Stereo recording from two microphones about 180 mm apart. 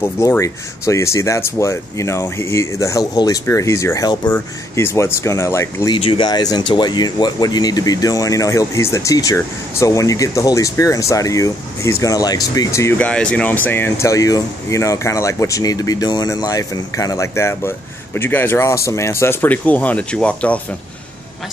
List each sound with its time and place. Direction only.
0.0 s speech: 15° left (ahead or behind)
5.9 s speech: 30° left (ahead or behind); by 20.6 s 5° left (ahead or behind)